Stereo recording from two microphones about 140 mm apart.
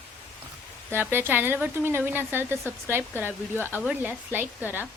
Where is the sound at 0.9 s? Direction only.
15° right (ahead or behind).